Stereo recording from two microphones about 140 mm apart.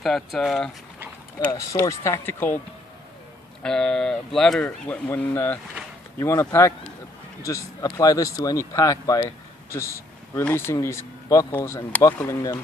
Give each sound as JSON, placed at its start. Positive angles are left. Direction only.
{"t": 0.0, "sound": "speech", "side_deg": 0}
{"t": 1.5, "sound": "speech", "side_deg": 20}
{"t": 3.6, "sound": "speech", "side_deg": 5}